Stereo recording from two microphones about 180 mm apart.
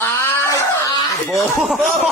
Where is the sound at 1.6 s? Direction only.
Centre (ahead or behind).